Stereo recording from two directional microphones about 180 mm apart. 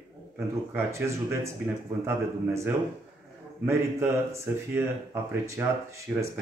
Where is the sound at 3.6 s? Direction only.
15° right (ahead or behind).